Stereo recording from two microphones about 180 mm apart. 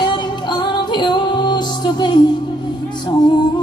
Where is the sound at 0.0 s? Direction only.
25° left (ahead or behind).